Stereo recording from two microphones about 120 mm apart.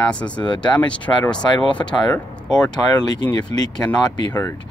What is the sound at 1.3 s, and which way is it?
Speech, 40° left (ahead or behind).